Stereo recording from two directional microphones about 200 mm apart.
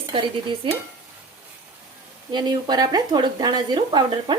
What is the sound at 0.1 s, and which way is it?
Speech, 25° right (ahead or behind).